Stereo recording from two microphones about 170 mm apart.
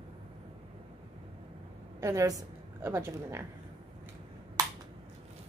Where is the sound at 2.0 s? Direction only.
20° right (ahead or behind).